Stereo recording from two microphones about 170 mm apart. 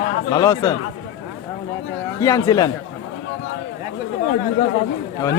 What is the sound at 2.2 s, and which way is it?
Speech, 20° left (ahead or behind).